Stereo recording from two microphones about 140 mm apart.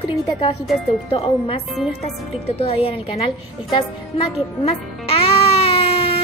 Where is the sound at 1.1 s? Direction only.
40° left (ahead or behind).